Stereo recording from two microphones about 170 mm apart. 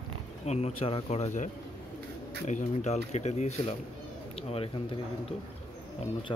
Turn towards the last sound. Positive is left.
turn(degrees=25)  # may be behind; listen again after turning